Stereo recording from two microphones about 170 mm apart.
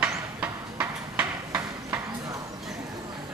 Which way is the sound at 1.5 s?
20° right (ahead or behind).